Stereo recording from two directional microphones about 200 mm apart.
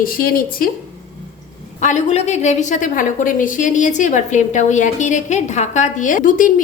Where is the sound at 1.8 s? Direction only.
35° left (ahead or behind).